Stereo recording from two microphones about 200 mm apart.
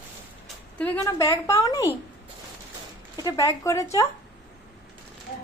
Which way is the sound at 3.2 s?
15° left (ahead or behind).